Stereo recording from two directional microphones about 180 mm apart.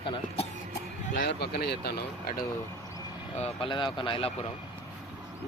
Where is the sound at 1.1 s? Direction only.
55° left (ahead or behind).